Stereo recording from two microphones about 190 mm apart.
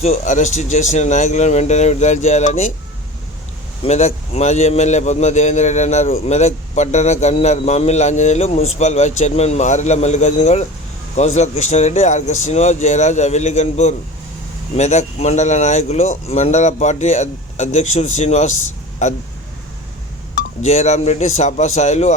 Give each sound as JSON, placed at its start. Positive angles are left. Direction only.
{"t": 0.0, "sound": "a man's voice", "side_deg": 40}
{"t": 3.8, "sound": "a man's voice", "side_deg": 35}
{"t": 20.6, "sound": "a man's voice", "side_deg": 35}